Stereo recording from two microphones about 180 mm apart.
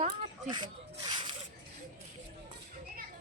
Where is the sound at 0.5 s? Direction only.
25° right (ahead or behind).